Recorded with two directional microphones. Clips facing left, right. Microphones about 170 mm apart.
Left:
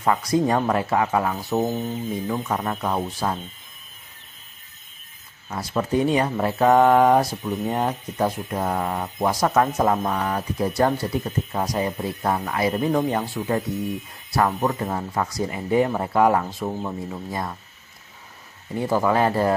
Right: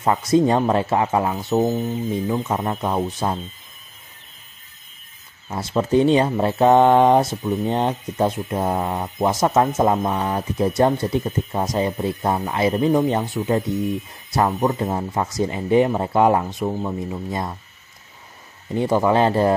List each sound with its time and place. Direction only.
0.0 s speech: 25° right (ahead or behind)
5.5 s speech: 25° right (ahead or behind)
16.6 s speech: 5° right (ahead or behind)
18.8 s speech: 20° right (ahead or behind)